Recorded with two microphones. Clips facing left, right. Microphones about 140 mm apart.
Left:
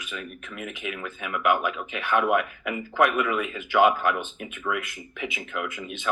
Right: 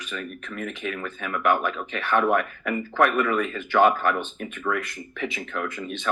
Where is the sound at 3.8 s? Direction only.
10° left (ahead or behind).